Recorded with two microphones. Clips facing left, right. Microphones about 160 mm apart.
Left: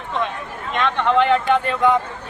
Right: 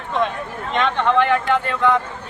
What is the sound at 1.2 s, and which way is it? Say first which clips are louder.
Speech: left 1 dB; 20° left (ahead or behind).